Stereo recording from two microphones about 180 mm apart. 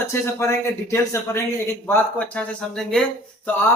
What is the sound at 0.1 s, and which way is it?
Speech, 15° left (ahead or behind).